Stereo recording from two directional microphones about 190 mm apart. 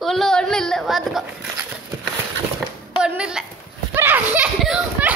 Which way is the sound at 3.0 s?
5° right (ahead or behind).